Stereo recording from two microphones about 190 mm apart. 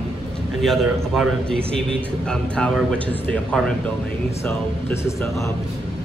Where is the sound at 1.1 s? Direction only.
Centre (ahead or behind).